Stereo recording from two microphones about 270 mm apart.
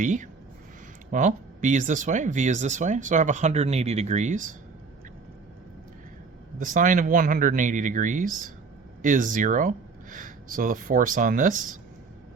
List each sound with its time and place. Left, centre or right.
0.0 s speech: right
6.6 s speech: right